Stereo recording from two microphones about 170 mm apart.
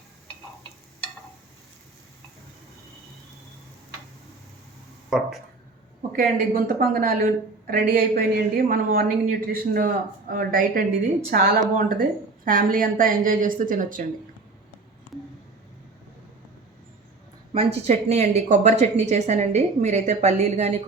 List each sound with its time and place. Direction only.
6.1 s a woman's voice: 55° right (ahead or behind)
17.5 s speech: 35° right (ahead or behind)